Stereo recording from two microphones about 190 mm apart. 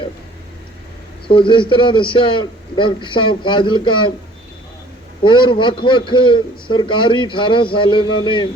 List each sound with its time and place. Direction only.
1.3 s a man's voice: 25° left (ahead or behind)
5.2 s a man's voice: 25° left (ahead or behind)